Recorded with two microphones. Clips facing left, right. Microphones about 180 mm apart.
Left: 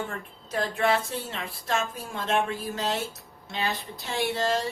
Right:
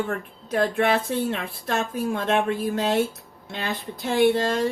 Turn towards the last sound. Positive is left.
turn(degrees=-55)  # may be behind; listen again after turning